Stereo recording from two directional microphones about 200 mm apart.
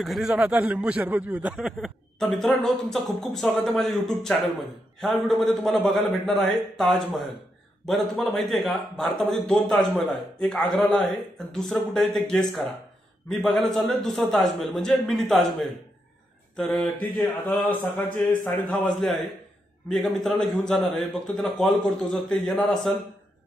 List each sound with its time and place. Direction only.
0.0 s a man's voice: centre (ahead or behind)
19.9 s a man's voice: centre (ahead or behind)